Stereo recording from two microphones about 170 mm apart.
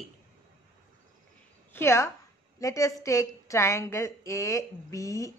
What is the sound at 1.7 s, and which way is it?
A woman's voice, 15° left (ahead or behind).